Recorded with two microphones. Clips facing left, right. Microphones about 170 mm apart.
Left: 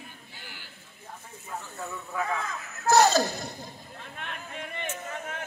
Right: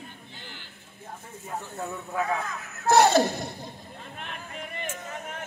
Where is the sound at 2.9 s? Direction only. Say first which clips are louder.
Right 1 dB; 30° right (ahead or behind).